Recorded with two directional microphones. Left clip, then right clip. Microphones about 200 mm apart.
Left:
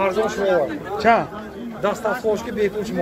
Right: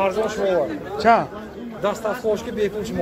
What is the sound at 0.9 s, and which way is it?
Speech, 15° right (ahead or behind).